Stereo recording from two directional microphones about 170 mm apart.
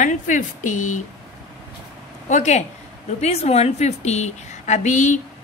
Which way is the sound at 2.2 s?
45° left (ahead or behind).